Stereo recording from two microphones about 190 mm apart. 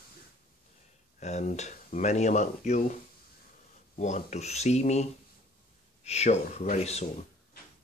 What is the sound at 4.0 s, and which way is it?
Speech, 40° left (ahead or behind).